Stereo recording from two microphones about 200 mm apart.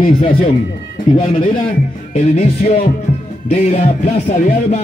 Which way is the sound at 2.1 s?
35° left (ahead or behind).